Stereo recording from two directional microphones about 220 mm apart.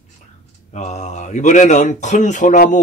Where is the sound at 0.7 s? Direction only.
30° left (ahead or behind).